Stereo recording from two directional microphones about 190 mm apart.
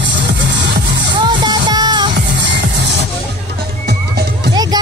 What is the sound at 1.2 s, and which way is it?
Music, 20° right (ahead or behind).